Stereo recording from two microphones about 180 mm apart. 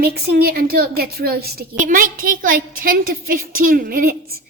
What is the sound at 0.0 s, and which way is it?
A woman's voice, 60° right (ahead or behind).